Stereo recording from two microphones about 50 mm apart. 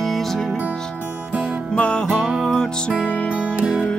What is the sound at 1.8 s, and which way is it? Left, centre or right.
Music, left.